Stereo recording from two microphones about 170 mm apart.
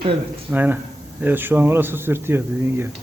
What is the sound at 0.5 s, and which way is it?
Speech, 10° right (ahead or behind).